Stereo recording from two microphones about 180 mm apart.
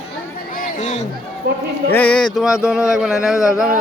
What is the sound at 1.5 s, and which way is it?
Speech, 60° right (ahead or behind).